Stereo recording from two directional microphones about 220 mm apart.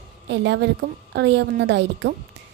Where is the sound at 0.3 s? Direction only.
50° right (ahead or behind).